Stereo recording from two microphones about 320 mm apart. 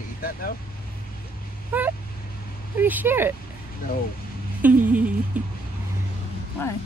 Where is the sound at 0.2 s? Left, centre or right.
Left.